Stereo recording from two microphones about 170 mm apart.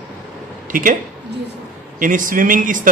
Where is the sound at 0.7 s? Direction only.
55° right (ahead or behind).